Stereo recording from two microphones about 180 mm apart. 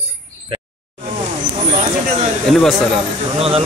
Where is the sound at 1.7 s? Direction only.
40° right (ahead or behind).